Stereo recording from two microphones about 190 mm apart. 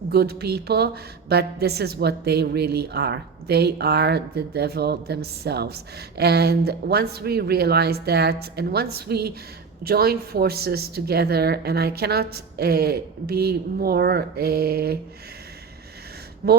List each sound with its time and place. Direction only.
0.1 s a woman's voice: 55° right (ahead or behind)
16.4 s speech: 55° right (ahead or behind)